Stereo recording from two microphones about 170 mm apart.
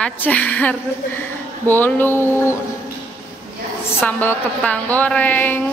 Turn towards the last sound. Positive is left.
turn(degrees=10)  # may be behind; listen again after turning